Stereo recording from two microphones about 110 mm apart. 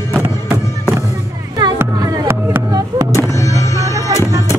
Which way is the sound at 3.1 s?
25° left (ahead or behind).